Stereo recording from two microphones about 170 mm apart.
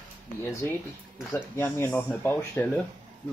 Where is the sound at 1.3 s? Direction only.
10° left (ahead or behind).